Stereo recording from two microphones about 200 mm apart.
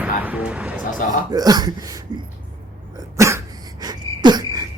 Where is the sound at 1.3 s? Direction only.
20° right (ahead or behind).